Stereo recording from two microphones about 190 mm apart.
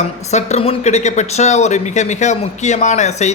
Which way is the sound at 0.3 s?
35° left (ahead or behind).